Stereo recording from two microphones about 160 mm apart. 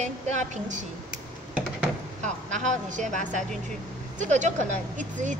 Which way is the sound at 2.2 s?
50° right (ahead or behind).